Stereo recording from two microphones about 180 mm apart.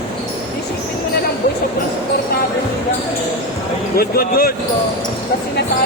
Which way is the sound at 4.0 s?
55° left (ahead or behind).